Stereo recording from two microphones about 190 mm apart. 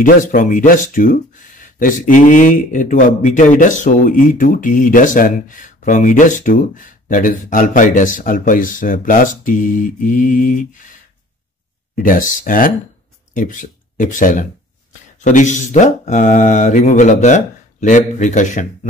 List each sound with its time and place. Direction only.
0.0 s speech: 45° left (ahead or behind)